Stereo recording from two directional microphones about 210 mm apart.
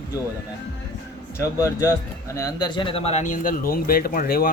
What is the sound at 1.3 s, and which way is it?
Speech, 15° left (ahead or behind).